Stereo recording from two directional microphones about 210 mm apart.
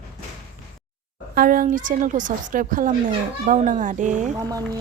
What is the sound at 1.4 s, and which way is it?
A woman's voice, 40° right (ahead or behind).